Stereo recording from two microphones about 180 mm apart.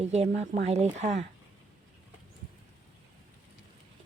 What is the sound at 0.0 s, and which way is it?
A woman's voice, 35° right (ahead or behind).